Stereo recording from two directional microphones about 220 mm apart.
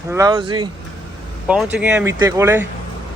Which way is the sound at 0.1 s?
15° right (ahead or behind).